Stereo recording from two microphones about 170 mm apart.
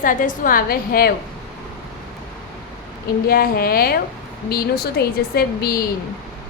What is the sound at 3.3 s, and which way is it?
A woman's voice, 65° left (ahead or behind).